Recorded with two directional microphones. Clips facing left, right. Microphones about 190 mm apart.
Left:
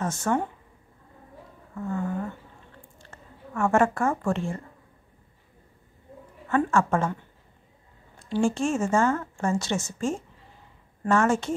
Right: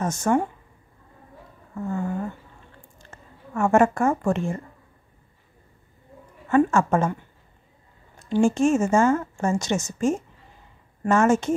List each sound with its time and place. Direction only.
0.0 s a woman's voice: 15° right (ahead or behind)
1.8 s a woman's voice: 15° right (ahead or behind)
6.5 s speech: 20° right (ahead or behind)
8.2 s speech: 20° right (ahead or behind)